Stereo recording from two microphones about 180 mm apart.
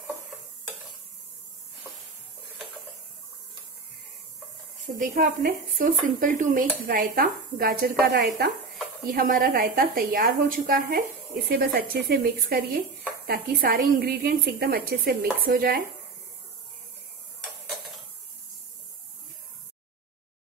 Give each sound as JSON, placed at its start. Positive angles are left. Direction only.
{"t": 4.8, "sound": "speech", "side_deg": -50}
{"t": 9.1, "sound": "a woman's voice", "side_deg": -50}